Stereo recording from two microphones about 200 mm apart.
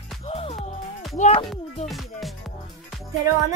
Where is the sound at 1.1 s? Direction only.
35° left (ahead or behind).